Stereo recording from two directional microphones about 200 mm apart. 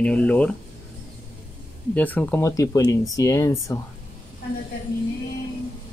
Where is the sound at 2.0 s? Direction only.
10° left (ahead or behind).